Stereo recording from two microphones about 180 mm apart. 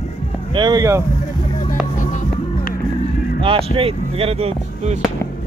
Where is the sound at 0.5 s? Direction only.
20° right (ahead or behind).